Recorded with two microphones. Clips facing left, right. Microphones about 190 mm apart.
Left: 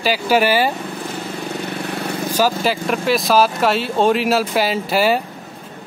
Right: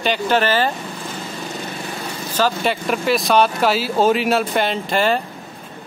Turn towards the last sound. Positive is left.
turn(degrees=5)  # may be behind; listen again after turning